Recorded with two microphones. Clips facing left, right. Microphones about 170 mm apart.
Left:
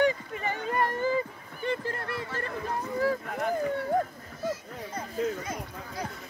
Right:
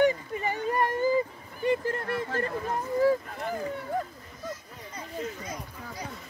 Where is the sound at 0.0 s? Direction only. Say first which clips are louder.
Right 2 dB; 40° right (ahead or behind).